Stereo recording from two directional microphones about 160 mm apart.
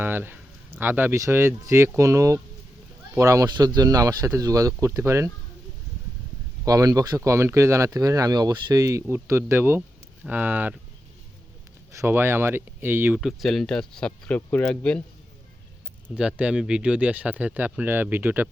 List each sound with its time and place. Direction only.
0.0 s speech: 15° right (ahead or behind)
6.7 s speech: 20° right (ahead or behind)
11.9 s speech: 15° right (ahead or behind)
13.1 s speech: centre (ahead or behind)
16.1 s speech: 5° right (ahead or behind)